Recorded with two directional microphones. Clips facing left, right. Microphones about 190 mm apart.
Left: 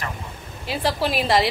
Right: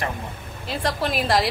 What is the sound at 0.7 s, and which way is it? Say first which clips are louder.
Speech: left 2 dB; centre (ahead or behind).